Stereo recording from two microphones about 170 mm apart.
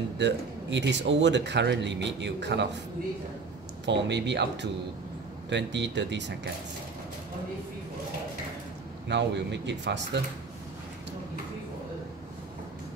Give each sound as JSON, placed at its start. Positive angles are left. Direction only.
{"t": 0.2, "sound": "speech", "side_deg": -90}
{"t": 3.8, "sound": "speech", "side_deg": -90}
{"t": 9.1, "sound": "speech", "side_deg": -90}